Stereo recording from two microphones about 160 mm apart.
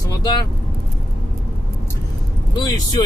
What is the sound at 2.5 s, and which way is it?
Speech, 25° left (ahead or behind).